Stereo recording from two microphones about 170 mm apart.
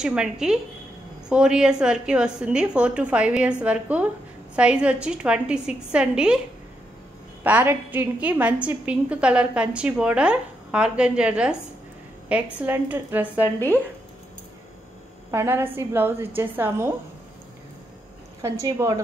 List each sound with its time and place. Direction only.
0.0 s a woman's voice: 5° right (ahead or behind)
7.4 s a woman's voice: 10° right (ahead or behind)
12.5 s a woman's voice: 10° right (ahead or behind)
15.3 s a woman's voice: 15° right (ahead or behind)
18.4 s a woman's voice: 20° right (ahead or behind)